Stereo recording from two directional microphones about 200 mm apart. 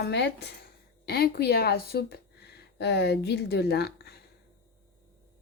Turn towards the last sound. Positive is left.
turn(degrees=50)  # may be behind; listen again after turning